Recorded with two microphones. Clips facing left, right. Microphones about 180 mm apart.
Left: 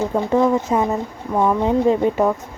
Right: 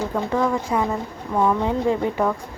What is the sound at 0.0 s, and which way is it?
Speech, 25° left (ahead or behind).